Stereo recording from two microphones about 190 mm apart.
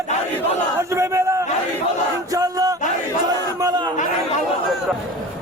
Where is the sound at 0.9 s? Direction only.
15° right (ahead or behind).